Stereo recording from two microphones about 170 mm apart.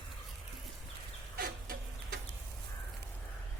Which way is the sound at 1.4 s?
60° right (ahead or behind).